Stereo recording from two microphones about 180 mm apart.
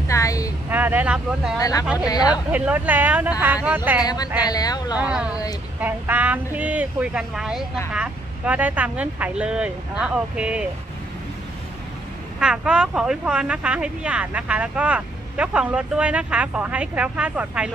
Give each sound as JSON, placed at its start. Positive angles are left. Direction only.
{"t": 0.1, "sound": "a sound", "side_deg": 20}
{"t": 0.7, "sound": "speech", "side_deg": -10}
{"t": 1.6, "sound": "speech", "side_deg": 20}
{"t": 2.5, "sound": "speech", "side_deg": -10}
{"t": 4.0, "sound": "speech", "side_deg": 20}
{"t": 4.9, "sound": "speech", "side_deg": -5}
{"t": 12.4, "sound": "speech", "side_deg": -5}